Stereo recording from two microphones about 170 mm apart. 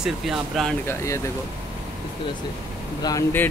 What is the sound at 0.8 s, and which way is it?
Speech, 15° left (ahead or behind).